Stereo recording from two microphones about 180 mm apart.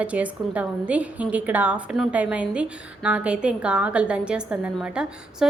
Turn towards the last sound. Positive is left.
turn(degrees=-5)  # may be behind; listen again after turning